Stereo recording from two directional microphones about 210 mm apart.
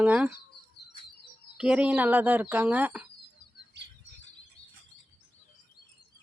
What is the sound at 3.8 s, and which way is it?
Bird flight, 55° right (ahead or behind).